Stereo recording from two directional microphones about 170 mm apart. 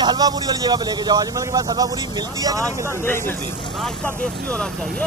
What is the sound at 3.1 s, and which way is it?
Speech, 10° left (ahead or behind).